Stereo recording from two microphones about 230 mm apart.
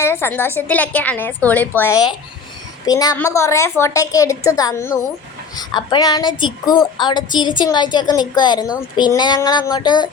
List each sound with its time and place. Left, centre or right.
0.0 s a woman's voice: centre